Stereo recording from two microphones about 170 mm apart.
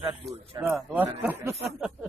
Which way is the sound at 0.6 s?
10° right (ahead or behind).